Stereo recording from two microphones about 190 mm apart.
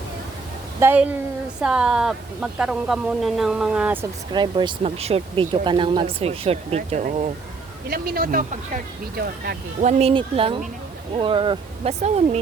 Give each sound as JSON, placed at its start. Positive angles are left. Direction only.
{"t": 0.8, "sound": "a woman's voice", "side_deg": -10}
{"t": 4.3, "sound": "speech", "side_deg": -25}
{"t": 7.9, "sound": "speech", "side_deg": -50}
{"t": 9.8, "sound": "speech", "side_deg": -30}